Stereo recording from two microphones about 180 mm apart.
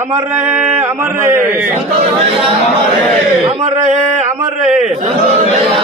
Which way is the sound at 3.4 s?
30° right (ahead or behind).